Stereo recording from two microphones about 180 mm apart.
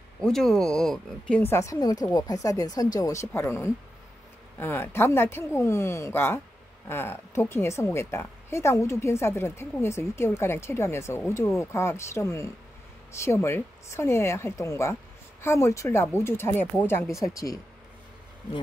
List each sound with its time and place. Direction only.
0.2 s speech: centre (ahead or behind)
1.3 s speech: 15° left (ahead or behind)